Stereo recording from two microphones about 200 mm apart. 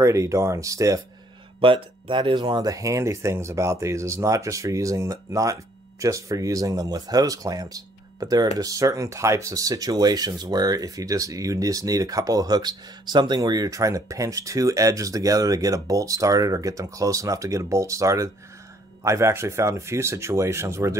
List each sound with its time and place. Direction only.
0.0 s speech: 15° right (ahead or behind)
1.6 s speech: 25° right (ahead or behind)